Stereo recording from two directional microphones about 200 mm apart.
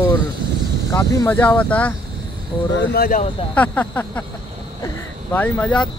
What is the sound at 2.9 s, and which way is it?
Speech, 45° left (ahead or behind).